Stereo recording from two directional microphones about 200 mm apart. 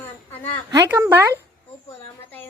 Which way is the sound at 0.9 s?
10° right (ahead or behind).